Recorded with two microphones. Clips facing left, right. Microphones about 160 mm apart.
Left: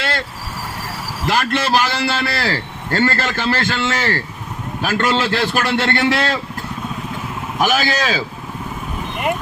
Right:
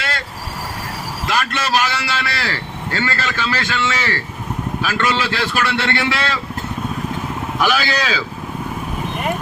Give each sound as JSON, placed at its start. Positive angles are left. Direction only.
{"t": 1.3, "sound": "a man's voice", "side_deg": 55}
{"t": 7.6, "sound": "a man's voice", "side_deg": 45}